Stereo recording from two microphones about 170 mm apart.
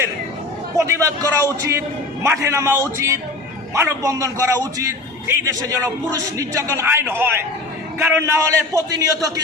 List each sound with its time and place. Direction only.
0.8 s a man's voice: 15° right (ahead or behind)